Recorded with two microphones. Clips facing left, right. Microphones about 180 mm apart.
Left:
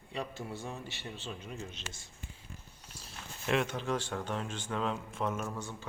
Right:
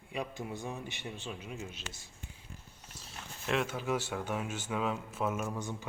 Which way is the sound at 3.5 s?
5° right (ahead or behind).